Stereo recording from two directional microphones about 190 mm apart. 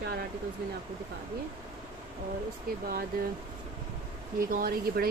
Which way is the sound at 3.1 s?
50° right (ahead or behind).